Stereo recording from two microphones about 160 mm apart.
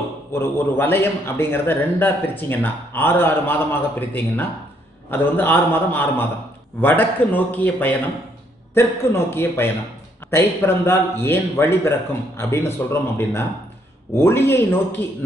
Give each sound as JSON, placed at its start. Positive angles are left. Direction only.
{"t": 0.3, "sound": "a man's voice", "side_deg": 15}